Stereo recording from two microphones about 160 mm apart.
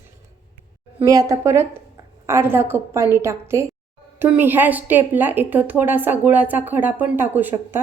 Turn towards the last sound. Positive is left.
turn(degrees=-10)  # may be behind; listen again after turning